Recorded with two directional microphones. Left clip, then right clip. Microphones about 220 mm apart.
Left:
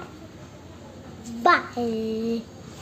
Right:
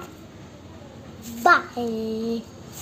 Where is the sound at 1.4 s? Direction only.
5° left (ahead or behind).